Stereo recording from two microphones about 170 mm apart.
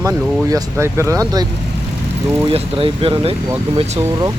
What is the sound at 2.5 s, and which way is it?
Speech, 30° right (ahead or behind).